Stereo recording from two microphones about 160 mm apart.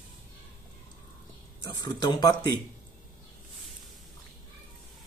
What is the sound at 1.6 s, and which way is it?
Speech, 25° left (ahead or behind).